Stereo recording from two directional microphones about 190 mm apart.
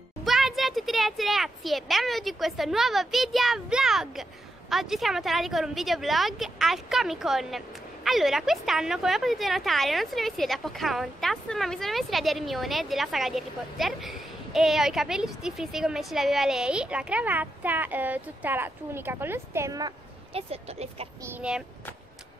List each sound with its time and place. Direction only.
0.2 s speech: centre (ahead or behind); by 19.9 s 15° right (ahead or behind)
20.3 s speech: 30° right (ahead or behind)
21.2 s speech: 10° right (ahead or behind)